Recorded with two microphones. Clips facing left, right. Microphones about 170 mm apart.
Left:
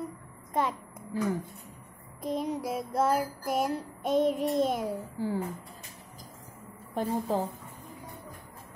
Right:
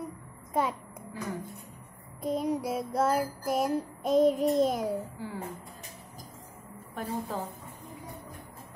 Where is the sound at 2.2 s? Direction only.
Centre (ahead or behind).